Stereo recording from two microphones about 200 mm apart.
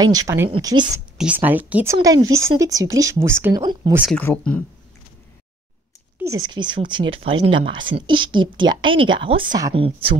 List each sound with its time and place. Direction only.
0.0 s speech: 20° right (ahead or behind)
1.1 s speech: 5° right (ahead or behind)
2.0 s speech: 20° right (ahead or behind)
4.2 s speech: 10° left (ahead or behind)
6.1 s speech: 15° right (ahead or behind)